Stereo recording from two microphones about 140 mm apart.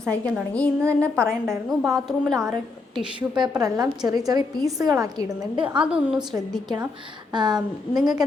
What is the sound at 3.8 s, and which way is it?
A woman's voice, 25° right (ahead or behind).